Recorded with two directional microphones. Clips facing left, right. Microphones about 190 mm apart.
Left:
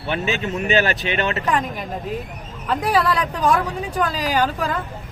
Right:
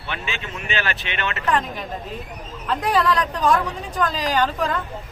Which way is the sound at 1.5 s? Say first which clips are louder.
Left 1 dB; 10° left (ahead or behind).